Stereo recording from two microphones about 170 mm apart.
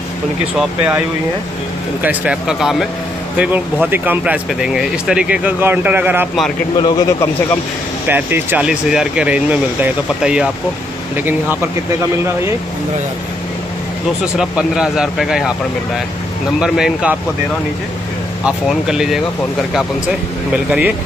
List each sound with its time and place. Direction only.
0.6 s speech: 10° right (ahead or behind)
2.0 s speech: 5° right (ahead or behind)
6.8 s speech: 20° left (ahead or behind)
8.1 s speech: 10° right (ahead or behind)
14.2 s speech: 5° right (ahead or behind)
16.5 s speech: 5° right (ahead or behind)
18.4 s speech: 5° right (ahead or behind)